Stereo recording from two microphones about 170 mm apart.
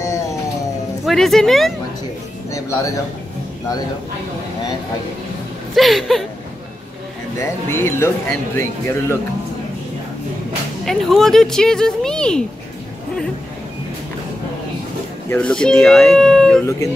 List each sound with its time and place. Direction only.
1.0 s speech: centre (ahead or behind)
2.5 s music: 20° left (ahead or behind)
5.8 s speech: centre (ahead or behind)
7.3 s speech: 15° left (ahead or behind)
10.9 s speech: centre (ahead or behind)
15.2 s speech: 5° left (ahead or behind)